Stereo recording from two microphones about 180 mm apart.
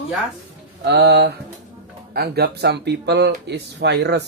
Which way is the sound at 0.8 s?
70° right (ahead or behind).